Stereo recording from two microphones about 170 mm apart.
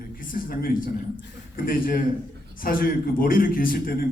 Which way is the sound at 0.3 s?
55° left (ahead or behind).